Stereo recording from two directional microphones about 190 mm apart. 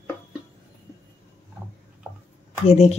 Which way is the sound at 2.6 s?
35° left (ahead or behind).